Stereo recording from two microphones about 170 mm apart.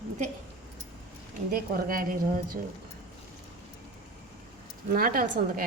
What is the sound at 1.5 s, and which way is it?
A woman's voice, 55° right (ahead or behind).